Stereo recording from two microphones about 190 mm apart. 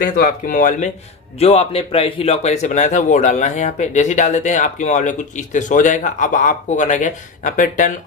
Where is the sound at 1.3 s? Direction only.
35° left (ahead or behind).